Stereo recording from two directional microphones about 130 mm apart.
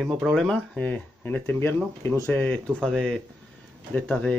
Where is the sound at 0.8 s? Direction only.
10° left (ahead or behind).